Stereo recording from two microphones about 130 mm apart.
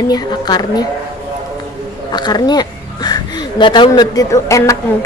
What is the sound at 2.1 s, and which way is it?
A woman's voice, 35° left (ahead or behind).